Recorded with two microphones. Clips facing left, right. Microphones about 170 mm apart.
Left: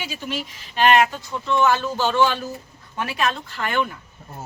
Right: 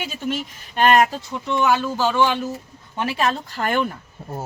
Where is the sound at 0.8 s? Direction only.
45° right (ahead or behind).